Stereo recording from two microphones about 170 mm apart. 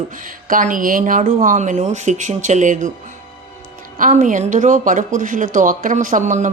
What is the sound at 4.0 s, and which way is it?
Speech, 50° right (ahead or behind).